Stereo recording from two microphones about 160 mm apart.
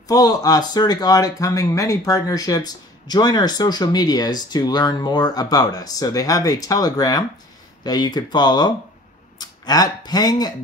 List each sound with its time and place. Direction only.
0.1 s speech: 25° left (ahead or behind)